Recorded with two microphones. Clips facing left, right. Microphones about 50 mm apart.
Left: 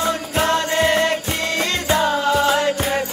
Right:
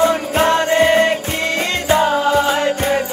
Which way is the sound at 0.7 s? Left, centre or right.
Centre.